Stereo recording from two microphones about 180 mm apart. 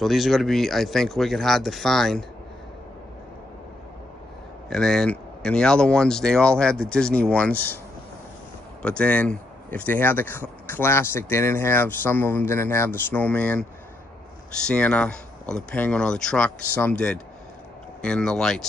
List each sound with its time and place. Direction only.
0.0 s speech: centre (ahead or behind)
4.6 s speech: 5° left (ahead or behind)
8.8 s speech: 5° left (ahead or behind)